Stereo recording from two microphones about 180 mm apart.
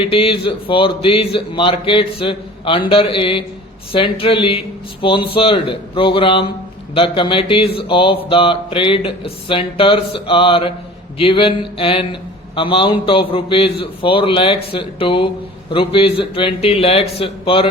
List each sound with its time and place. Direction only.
0.0 s a man's voice: 30° left (ahead or behind)